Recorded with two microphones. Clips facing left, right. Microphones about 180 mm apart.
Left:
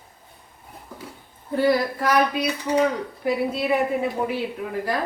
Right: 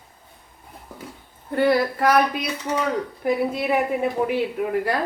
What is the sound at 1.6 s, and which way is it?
Speech, 60° right (ahead or behind).